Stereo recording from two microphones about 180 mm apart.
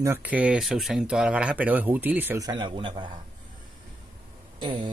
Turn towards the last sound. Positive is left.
turn(degrees=-25)  # may be behind; listen again after turning